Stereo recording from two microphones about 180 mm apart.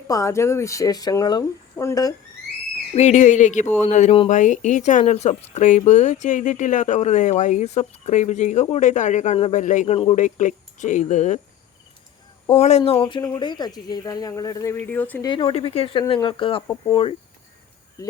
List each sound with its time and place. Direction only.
0.1 s speech: 15° left (ahead or behind)
2.9 s speech: 40° left (ahead or behind)
12.5 s speech: 35° left (ahead or behind); by 15.3 s 10° left (ahead or behind)
15.3 s speech: 25° left (ahead or behind)